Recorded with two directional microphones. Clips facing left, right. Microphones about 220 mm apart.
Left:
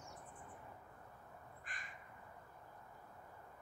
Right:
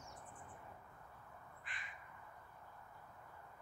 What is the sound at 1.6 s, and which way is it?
Crow, 45° left (ahead or behind).